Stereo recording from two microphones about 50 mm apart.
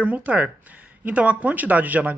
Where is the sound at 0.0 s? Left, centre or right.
Right.